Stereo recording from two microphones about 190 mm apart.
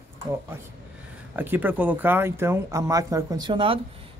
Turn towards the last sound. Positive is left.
turn(degrees=-25)  # may be behind; listen again after turning